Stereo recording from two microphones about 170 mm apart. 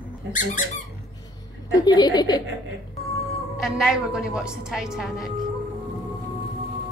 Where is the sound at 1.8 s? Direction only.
25° left (ahead or behind).